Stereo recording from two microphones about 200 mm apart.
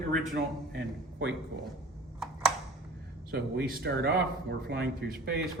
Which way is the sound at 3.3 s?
50° right (ahead or behind).